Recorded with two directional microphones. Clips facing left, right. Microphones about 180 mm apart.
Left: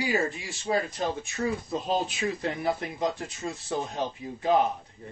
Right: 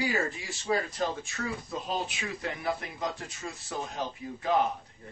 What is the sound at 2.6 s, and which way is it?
Speech, 25° left (ahead or behind).